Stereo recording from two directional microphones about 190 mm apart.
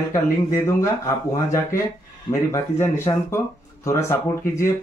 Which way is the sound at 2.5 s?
15° left (ahead or behind).